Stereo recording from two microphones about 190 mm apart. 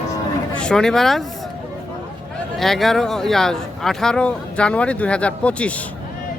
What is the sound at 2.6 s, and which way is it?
Speech, centre (ahead or behind).